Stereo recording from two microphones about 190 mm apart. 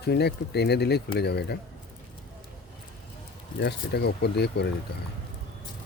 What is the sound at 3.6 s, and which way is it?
Speech, 60° left (ahead or behind).